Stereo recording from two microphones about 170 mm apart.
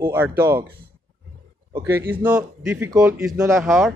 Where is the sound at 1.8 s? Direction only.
10° right (ahead or behind).